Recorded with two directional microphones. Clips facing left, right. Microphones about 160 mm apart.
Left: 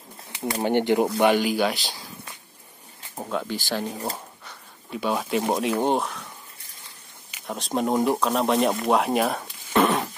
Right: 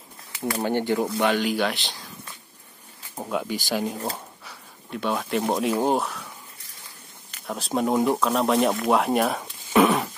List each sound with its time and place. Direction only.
0.5 s speech: 20° left (ahead or behind)
1.2 s speech: 10° left (ahead or behind)
3.3 s speech: 10° right (ahead or behind)
3.8 s speech: centre (ahead or behind)
7.2 s speech: centre (ahead or behind)